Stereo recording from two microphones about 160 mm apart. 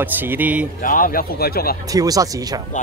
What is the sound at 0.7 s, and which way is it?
Speech, 60° left (ahead or behind).